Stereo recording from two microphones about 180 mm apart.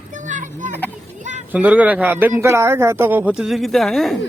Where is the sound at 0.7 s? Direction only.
10° left (ahead or behind).